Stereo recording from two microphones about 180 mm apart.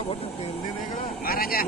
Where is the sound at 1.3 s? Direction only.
55° left (ahead or behind).